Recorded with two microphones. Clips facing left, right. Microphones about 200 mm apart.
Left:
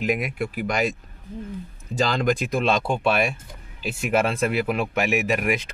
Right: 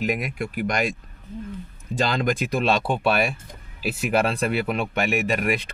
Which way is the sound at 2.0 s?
Centre (ahead or behind).